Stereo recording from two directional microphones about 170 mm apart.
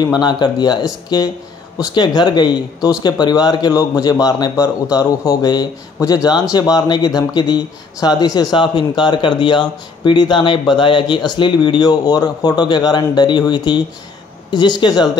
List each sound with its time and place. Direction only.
0.0 s speech: 25° left (ahead or behind)